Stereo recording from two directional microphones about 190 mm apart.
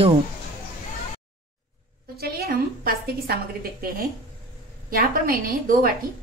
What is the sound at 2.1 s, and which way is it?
A woman's voice, 55° right (ahead or behind).